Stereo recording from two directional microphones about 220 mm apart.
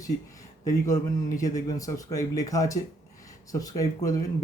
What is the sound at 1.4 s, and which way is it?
Speech, 15° left (ahead or behind).